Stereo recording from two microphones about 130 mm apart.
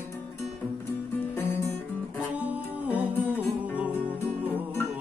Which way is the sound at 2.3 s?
10° right (ahead or behind).